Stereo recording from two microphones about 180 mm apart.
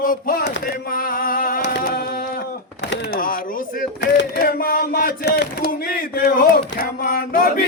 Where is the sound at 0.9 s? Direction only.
50° left (ahead or behind).